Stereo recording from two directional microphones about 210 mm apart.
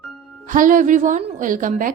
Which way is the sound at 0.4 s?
40° right (ahead or behind).